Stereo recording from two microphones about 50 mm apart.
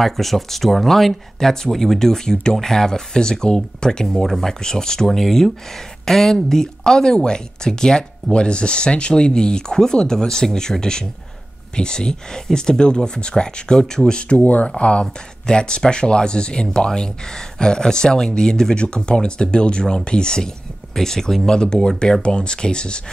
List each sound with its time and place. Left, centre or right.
0.0 s speech: centre
14.4 s speech: left